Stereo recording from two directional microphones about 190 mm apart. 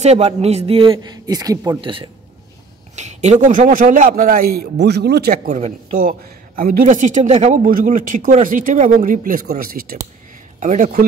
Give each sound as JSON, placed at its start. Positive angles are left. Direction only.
{"t": 0.0, "sound": "a man's voice", "side_deg": -35}
{"t": 3.0, "sound": "a man's voice", "side_deg": -35}